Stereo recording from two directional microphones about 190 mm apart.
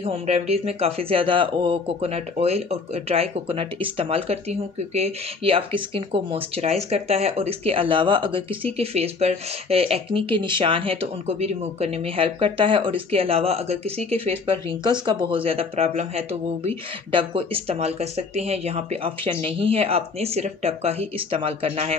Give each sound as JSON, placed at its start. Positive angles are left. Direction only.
{"t": 0.0, "sound": "speech", "side_deg": -35}